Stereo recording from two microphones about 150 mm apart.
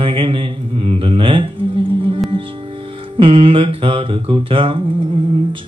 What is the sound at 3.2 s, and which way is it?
Music, 35° right (ahead or behind).